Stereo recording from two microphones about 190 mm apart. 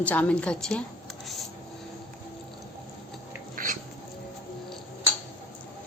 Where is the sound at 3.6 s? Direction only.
45° right (ahead or behind).